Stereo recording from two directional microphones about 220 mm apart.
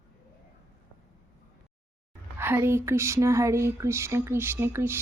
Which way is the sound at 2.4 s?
10° right (ahead or behind).